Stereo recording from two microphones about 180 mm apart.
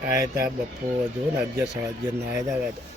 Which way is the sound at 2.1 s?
15° right (ahead or behind).